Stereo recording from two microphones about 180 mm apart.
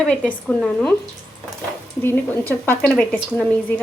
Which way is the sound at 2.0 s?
10° left (ahead or behind).